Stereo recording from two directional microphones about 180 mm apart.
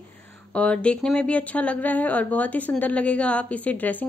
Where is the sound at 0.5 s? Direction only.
5° left (ahead or behind).